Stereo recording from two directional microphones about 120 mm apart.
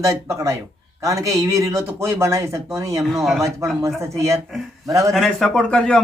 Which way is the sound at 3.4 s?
25° right (ahead or behind).